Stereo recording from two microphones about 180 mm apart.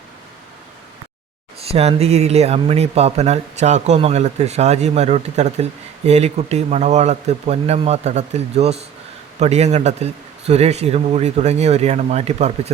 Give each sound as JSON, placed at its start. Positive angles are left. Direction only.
{"t": 1.5, "sound": "speech", "side_deg": -35}